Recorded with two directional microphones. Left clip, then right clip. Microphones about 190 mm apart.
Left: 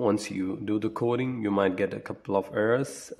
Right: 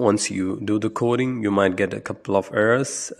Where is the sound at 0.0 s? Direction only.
25° right (ahead or behind).